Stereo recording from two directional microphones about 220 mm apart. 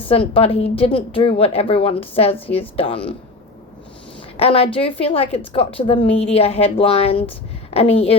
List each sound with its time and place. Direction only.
0.1 s a woman's voice: 25° left (ahead or behind)
4.4 s a woman's voice: 25° left (ahead or behind)